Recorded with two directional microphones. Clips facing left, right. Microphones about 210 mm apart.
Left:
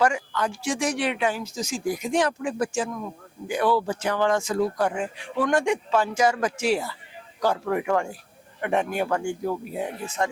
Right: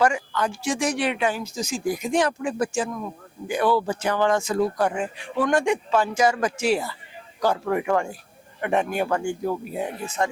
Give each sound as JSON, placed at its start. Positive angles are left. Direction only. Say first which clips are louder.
{"t": 0.0, "sound": "speech", "louder": "right 1 dB", "side_deg": -10}